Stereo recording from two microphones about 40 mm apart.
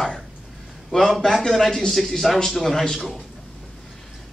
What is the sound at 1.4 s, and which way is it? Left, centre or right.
A man's voice, centre.